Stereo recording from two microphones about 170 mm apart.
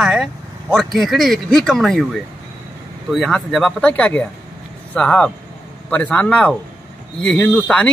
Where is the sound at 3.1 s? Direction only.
Centre (ahead or behind).